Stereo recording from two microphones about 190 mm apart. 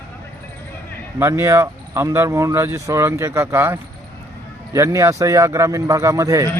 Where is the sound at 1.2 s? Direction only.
15° right (ahead or behind).